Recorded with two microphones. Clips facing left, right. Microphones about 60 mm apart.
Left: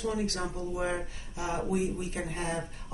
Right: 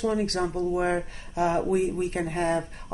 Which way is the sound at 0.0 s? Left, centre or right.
Right.